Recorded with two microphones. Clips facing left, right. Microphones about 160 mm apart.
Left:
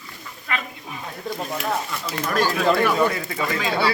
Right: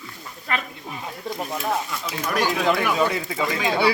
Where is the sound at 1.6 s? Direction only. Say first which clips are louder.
Right 1 dB; 5° right (ahead or behind).